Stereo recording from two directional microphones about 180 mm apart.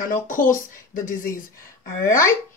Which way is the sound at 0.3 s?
50° left (ahead or behind).